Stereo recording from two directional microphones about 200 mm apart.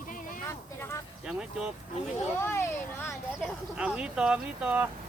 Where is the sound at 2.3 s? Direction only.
10° left (ahead or behind).